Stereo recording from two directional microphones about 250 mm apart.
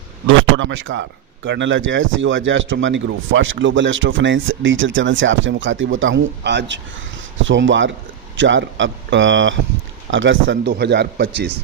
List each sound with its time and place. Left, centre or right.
0.6 s speech: right